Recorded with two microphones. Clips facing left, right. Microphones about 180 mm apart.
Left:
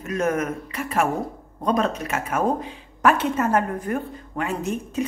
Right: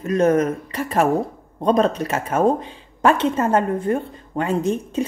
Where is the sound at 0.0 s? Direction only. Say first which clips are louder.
Right 7 dB; 30° right (ahead or behind).